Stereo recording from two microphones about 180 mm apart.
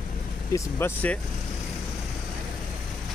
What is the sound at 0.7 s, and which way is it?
Speech, 10° left (ahead or behind).